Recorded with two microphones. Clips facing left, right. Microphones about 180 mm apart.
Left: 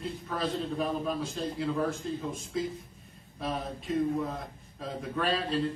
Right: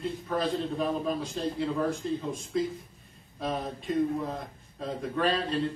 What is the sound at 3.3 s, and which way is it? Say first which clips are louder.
A man's voice: right 2 dB; centre (ahead or behind).